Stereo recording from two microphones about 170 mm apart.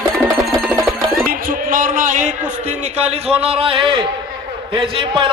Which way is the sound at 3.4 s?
35° right (ahead or behind).